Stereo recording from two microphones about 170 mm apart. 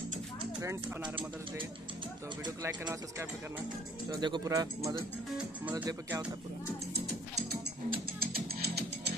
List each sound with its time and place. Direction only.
0.6 s speech: 15° right (ahead or behind)
2.4 s speech: 20° right (ahead or behind)
5.4 s speech: 10° right (ahead or behind)
7.9 s music: 60° right (ahead or behind)